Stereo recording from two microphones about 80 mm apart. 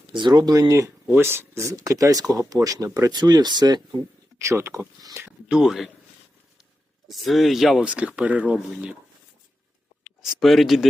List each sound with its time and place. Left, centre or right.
0.1 s speech: right
0.7 s speech: right
3.1 s speech: right
4.4 s speech: right
5.5 s speech: centre
7.1 s speech: centre
7.8 s speech: centre
10.0 s speech: centre